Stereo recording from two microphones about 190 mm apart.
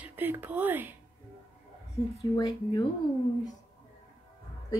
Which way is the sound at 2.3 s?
20° left (ahead or behind).